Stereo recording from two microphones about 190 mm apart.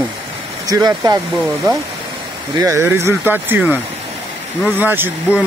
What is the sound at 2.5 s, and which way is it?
Speech, 15° right (ahead or behind).